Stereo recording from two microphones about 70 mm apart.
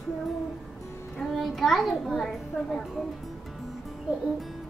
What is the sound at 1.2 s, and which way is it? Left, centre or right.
A child's voice, centre.